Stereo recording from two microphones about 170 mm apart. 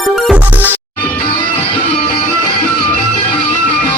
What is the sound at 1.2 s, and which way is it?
Music, 30° left (ahead or behind).